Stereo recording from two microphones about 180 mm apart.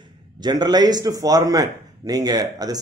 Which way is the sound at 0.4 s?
25° right (ahead or behind).